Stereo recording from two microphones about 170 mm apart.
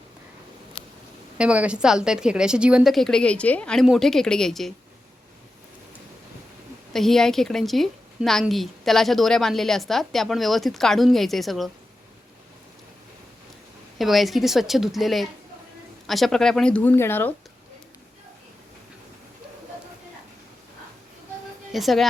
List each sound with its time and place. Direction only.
1.4 s a woman's voice: 5° right (ahead or behind)
6.9 s a woman's voice: centre (ahead or behind)
14.0 s a woman's voice: centre (ahead or behind)
21.7 s a woman's voice: centre (ahead or behind)